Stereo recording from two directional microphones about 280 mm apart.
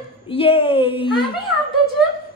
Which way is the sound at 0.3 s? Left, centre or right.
Centre.